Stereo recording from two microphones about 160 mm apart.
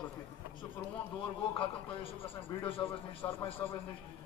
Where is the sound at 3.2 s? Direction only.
15° left (ahead or behind).